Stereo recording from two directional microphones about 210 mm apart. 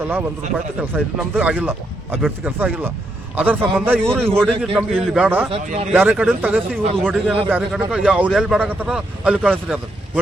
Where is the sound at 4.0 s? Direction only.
5° left (ahead or behind).